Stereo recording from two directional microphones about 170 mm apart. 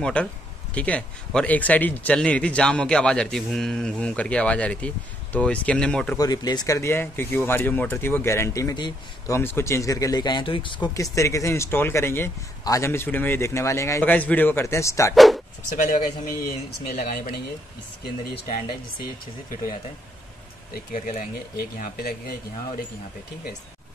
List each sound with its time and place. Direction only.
0.0 s speech: 5° left (ahead or behind)
6.1 s speech: 25° left (ahead or behind)
15.1 s speech: centre (ahead or behind)
16.4 s speech: 55° left (ahead or behind)
18.0 s speech: 70° left (ahead or behind)
20.7 s speech: 55° left (ahead or behind)